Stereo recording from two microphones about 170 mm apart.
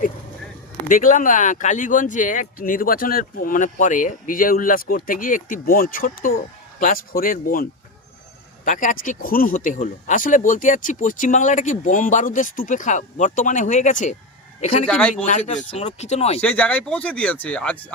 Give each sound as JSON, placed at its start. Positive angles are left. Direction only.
{"t": 0.9, "sound": "speech", "side_deg": 50}
{"t": 14.8, "sound": "speech", "side_deg": 10}
{"t": 15.4, "sound": "speech", "side_deg": 40}
{"t": 16.4, "sound": "speech", "side_deg": 10}